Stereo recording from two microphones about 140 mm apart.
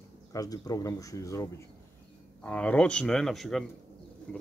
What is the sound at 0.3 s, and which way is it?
Speech, 25° left (ahead or behind).